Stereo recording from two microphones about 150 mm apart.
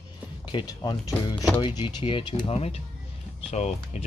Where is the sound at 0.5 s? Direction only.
30° left (ahead or behind).